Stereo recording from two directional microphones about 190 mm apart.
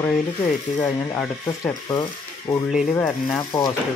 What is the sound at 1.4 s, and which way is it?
Rub, 15° left (ahead or behind).